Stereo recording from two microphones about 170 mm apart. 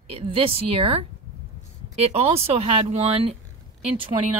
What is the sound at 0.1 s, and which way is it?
Speech, 30° right (ahead or behind).